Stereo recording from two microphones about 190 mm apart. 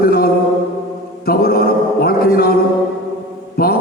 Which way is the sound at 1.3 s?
55° left (ahead or behind).